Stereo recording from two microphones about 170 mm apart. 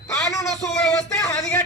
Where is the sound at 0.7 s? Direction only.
5° left (ahead or behind).